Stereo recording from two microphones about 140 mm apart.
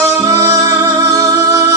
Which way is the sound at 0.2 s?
20° right (ahead or behind).